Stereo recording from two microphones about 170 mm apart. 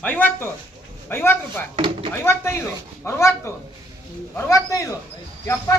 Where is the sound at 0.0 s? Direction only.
10° left (ahead or behind).